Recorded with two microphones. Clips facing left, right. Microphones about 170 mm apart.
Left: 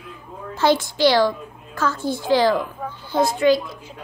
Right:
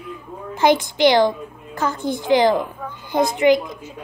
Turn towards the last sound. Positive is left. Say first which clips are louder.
# right 1 dB
turn(degrees=-20)  # may be behind; listen again after turning